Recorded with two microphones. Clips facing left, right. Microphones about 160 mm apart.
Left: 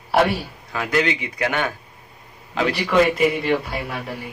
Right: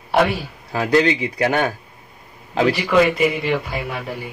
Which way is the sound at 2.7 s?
5° right (ahead or behind).